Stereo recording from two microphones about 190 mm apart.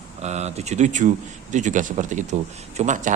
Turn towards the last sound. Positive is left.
turn(degrees=-40)  # may be behind; listen again after turning